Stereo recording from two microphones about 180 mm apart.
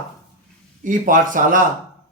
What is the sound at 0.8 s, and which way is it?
Speech, 45° right (ahead or behind).